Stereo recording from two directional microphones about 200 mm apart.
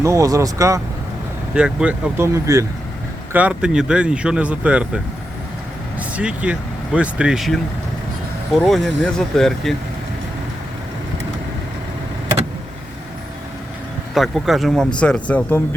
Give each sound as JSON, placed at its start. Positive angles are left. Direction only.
{"t": 0.0, "sound": "speech", "side_deg": -15}
{"t": 1.5, "sound": "speech", "side_deg": -5}
{"t": 6.0, "sound": "speech", "side_deg": -5}
{"t": 14.1, "sound": "speech", "side_deg": 0}